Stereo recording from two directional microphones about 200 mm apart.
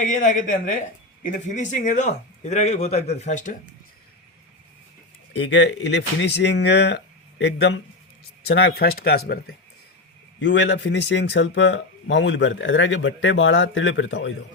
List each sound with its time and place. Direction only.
0.0 s speech: 40° left (ahead or behind)
5.3 s speech: 60° left (ahead or behind)